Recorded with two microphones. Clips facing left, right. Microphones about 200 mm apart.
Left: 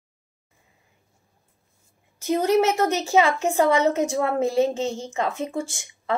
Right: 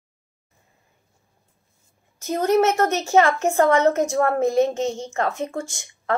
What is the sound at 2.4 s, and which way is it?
A woman's voice, 10° left (ahead or behind).